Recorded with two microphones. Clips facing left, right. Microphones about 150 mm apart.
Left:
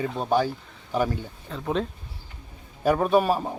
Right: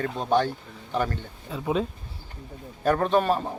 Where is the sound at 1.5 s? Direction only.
5° right (ahead or behind).